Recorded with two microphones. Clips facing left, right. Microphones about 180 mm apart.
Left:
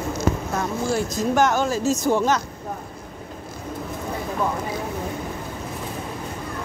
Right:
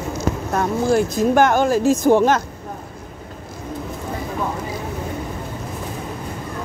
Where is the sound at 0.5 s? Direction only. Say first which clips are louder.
Right 6 dB; 55° right (ahead or behind).